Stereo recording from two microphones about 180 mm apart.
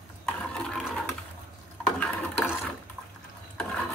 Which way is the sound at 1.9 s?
Centre (ahead or behind).